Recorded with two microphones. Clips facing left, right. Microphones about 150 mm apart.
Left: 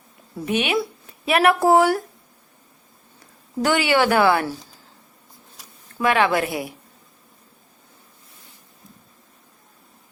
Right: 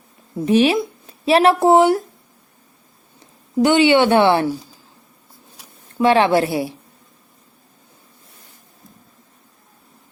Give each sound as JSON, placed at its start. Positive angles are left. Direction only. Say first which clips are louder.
{"t": 0.3, "sound": "a woman's voice", "louder": "right 7 dB", "side_deg": -30}
{"t": 3.2, "sound": "speech", "louder": "right 8 dB", "side_deg": -20}
{"t": 6.0, "sound": "a woman's voice", "louder": "right 5 dB", "side_deg": -30}